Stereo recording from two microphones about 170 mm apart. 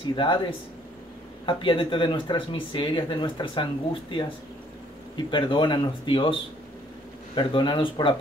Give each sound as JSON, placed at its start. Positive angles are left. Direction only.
{"t": 0.1, "sound": "speech", "side_deg": 30}